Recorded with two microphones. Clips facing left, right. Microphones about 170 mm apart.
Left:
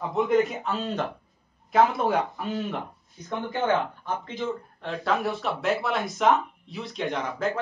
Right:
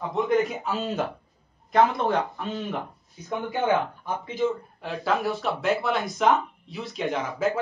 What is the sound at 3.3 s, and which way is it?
Speech, 10° right (ahead or behind).